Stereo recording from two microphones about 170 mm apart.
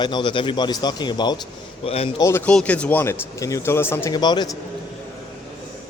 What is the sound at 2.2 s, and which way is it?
A man's voice, 10° left (ahead or behind).